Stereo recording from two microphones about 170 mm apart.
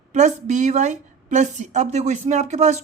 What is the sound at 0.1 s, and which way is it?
Speech, 45° right (ahead or behind).